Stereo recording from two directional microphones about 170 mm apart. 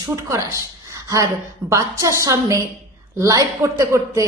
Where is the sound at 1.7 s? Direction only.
20° right (ahead or behind).